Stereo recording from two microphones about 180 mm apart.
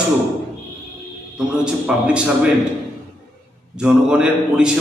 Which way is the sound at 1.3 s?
5° right (ahead or behind).